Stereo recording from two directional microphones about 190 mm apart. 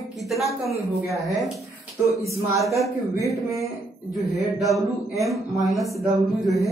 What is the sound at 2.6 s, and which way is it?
Speech, centre (ahead or behind).